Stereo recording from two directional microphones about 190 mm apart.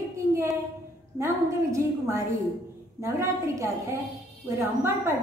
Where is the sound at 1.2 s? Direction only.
15° right (ahead or behind).